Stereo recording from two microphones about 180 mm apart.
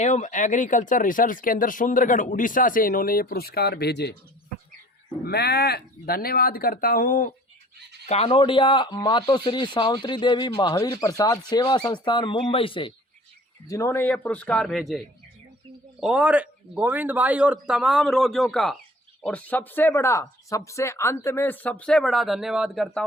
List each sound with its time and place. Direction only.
0.0 s speech: 40° left (ahead or behind); by 4.1 s 65° left (ahead or behind)
5.2 s speech: 65° left (ahead or behind)
8.0 s speech: 35° left (ahead or behind)
13.7 s speech: 15° left (ahead or behind); by 23.0 s centre (ahead or behind)